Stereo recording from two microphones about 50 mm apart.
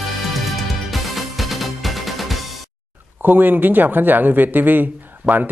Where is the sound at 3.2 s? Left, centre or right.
Right.